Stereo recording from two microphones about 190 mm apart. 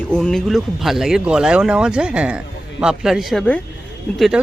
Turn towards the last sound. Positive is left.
turn(degrees=0)  # may be behind; listen again after turning